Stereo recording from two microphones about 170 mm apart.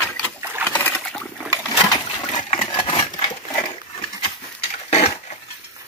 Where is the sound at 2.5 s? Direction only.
30° left (ahead or behind).